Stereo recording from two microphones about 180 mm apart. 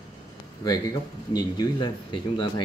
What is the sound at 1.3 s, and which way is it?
A man's voice, 20° left (ahead or behind).